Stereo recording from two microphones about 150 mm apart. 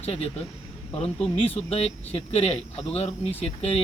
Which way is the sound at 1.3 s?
40° left (ahead or behind).